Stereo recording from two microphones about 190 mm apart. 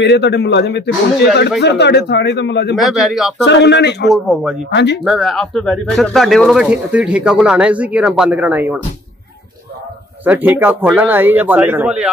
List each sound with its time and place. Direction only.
0.0 s a man's voice: 65° left (ahead or behind)
2.7 s speech: centre (ahead or behind)
3.4 s a man's voice: 65° left (ahead or behind)
4.1 s speech: centre (ahead or behind)
4.6 s a man's voice: 65° left (ahead or behind)
5.0 s speech: centre (ahead or behind)
10.2 s speech: 10° right (ahead or behind)